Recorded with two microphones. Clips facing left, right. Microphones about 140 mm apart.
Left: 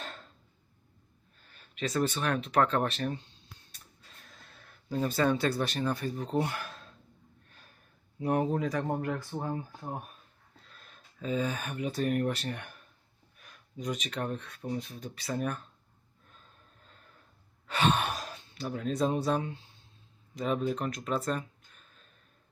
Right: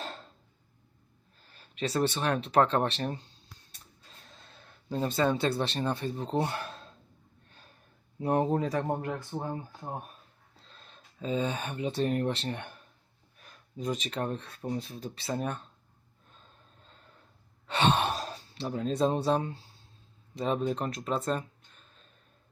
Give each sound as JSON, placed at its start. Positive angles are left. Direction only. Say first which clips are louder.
{"t": 0.0, "sound": "a sound", "louder": "right 3 dB", "side_deg": -30}
{"t": 1.5, "sound": "speech", "louder": "right 1 dB", "side_deg": -30}
{"t": 4.3, "sound": "speech", "louder": "right 2 dB", "side_deg": -25}
{"t": 8.2, "sound": "speech", "louder": "right 1 dB", "side_deg": -30}
{"t": 17.7, "sound": "speech", "louder": "right 2 dB", "side_deg": -30}